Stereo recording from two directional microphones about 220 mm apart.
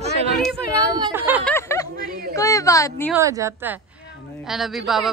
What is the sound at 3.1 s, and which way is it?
A woman's voice, 15° right (ahead or behind).